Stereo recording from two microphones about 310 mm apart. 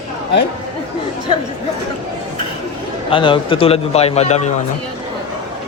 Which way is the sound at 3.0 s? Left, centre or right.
Centre.